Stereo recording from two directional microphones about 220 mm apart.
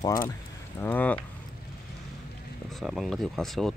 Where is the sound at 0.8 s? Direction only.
10° left (ahead or behind).